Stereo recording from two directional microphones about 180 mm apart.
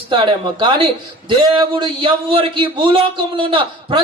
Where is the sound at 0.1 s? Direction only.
25° right (ahead or behind).